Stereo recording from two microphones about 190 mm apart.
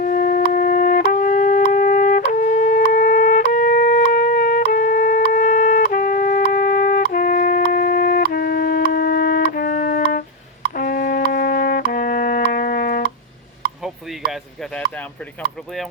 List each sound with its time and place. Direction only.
0.0 s wind instrument: 45° left (ahead or behind)
10.8 s music: 50° left (ahead or behind)
15.4 s speech: 5° left (ahead or behind)